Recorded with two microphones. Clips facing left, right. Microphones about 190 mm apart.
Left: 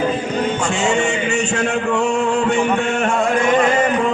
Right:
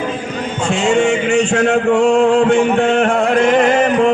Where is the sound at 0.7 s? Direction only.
60° right (ahead or behind).